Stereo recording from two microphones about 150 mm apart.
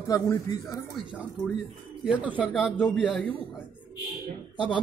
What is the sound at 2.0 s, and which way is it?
Speech, 10° right (ahead or behind).